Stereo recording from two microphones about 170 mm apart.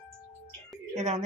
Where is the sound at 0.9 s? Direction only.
40° right (ahead or behind).